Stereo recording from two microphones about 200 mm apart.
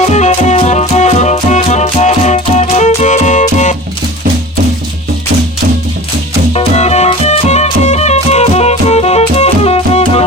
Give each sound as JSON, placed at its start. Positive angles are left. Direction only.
{"t": 0.0, "sound": "music", "side_deg": 35}
{"t": 6.5, "sound": "music", "side_deg": 30}